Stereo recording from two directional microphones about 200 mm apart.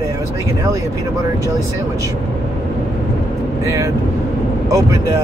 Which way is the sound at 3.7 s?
15° right (ahead or behind).